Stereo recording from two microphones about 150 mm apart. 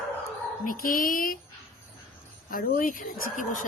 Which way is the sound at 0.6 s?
70° left (ahead or behind).